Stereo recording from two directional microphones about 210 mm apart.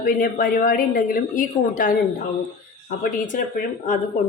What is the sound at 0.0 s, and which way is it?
A woman's voice, 45° left (ahead or behind).